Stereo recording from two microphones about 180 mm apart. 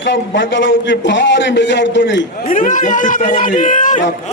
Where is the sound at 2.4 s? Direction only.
45° left (ahead or behind).